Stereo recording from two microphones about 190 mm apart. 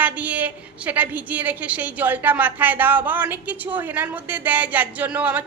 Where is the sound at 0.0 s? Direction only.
10° right (ahead or behind).